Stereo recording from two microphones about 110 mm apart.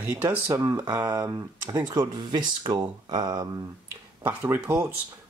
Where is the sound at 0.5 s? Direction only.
25° right (ahead or behind).